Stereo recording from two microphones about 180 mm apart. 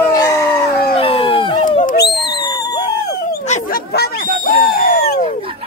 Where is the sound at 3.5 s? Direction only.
60° left (ahead or behind).